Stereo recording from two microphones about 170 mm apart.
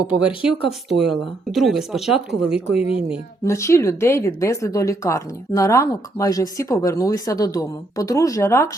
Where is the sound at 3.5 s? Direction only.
15° left (ahead or behind).